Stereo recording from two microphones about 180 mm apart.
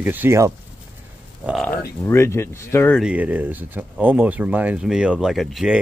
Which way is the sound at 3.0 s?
5° right (ahead or behind).